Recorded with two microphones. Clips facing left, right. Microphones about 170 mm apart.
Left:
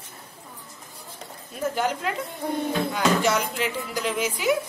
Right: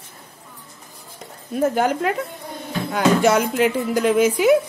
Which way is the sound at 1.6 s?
50° right (ahead or behind).